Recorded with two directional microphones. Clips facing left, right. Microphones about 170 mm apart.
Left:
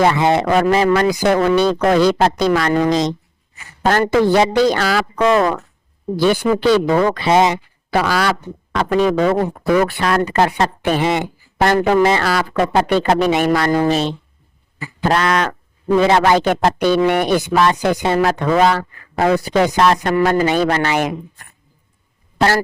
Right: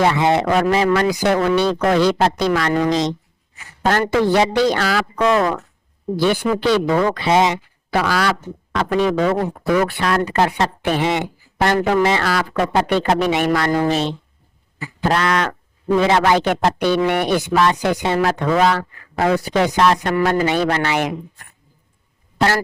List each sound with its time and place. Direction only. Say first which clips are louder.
0.0 s speech: left 2 dB; 45° left (ahead or behind)
3.8 s speech: left 2 dB; 40° left (ahead or behind)
15.1 s speech: left 2 dB; 40° left (ahead or behind)
22.4 s speech: left 2 dB; 35° left (ahead or behind)